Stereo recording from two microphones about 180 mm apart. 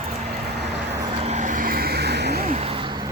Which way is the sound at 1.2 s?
40° right (ahead or behind).